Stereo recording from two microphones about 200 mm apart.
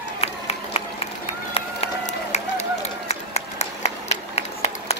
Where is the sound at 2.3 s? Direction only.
35° left (ahead or behind).